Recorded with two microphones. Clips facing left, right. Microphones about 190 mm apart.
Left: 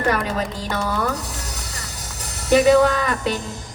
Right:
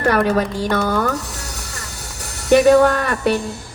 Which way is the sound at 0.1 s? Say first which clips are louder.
Right 6 dB; 50° right (ahead or behind).